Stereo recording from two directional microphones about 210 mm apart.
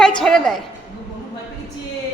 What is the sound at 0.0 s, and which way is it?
Speech, 5° left (ahead or behind).